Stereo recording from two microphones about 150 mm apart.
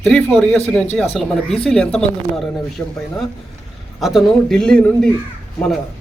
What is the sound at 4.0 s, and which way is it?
Speech, centre (ahead or behind).